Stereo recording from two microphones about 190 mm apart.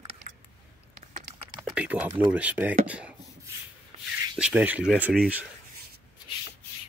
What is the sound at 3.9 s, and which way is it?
Rub, 35° right (ahead or behind).